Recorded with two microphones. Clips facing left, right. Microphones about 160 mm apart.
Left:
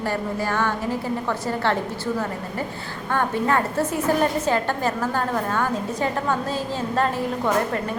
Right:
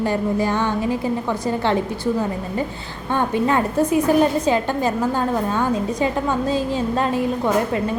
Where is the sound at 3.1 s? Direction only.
20° right (ahead or behind).